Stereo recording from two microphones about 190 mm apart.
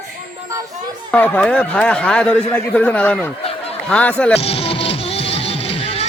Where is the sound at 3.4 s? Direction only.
30° left (ahead or behind).